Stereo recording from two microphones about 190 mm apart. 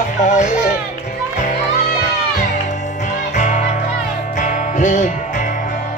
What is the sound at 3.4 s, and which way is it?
Music, 40° left (ahead or behind).